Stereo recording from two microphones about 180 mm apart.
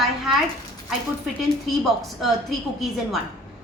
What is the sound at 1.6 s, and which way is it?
Speech, centre (ahead or behind).